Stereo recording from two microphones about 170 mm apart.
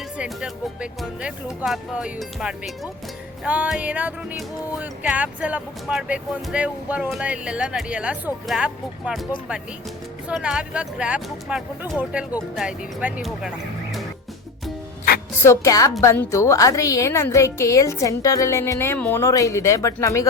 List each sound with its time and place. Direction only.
0.2 s speech: 5° right (ahead or behind)
3.4 s music: 5° right (ahead or behind)
10.2 s speech: 5° right (ahead or behind)
15.4 s a woman's voice: 15° left (ahead or behind)